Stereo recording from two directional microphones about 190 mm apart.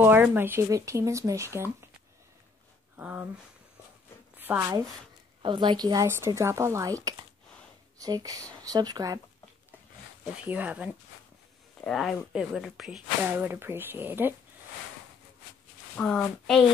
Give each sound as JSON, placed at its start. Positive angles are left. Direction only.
{"t": 0.0, "sound": "speech", "side_deg": -10}
{"t": 3.0, "sound": "speech", "side_deg": -10}
{"t": 4.4, "sound": "a woman's voice", "side_deg": -15}
{"t": 8.0, "sound": "speech", "side_deg": -20}
{"t": 10.4, "sound": "speech", "side_deg": -10}
{"t": 16.0, "sound": "speech", "side_deg": 5}